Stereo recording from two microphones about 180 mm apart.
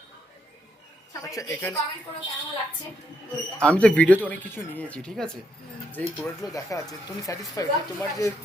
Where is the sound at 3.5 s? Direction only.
5° left (ahead or behind).